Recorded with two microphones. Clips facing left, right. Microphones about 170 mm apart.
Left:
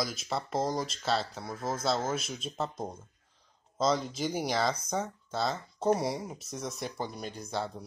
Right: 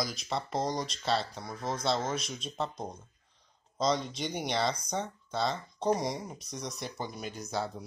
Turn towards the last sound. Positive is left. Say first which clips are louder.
# even
turn(degrees=0)  # may be behind; listen again after turning